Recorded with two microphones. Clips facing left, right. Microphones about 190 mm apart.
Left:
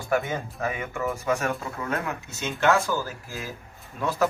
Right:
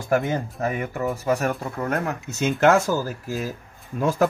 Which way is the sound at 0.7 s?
40° right (ahead or behind).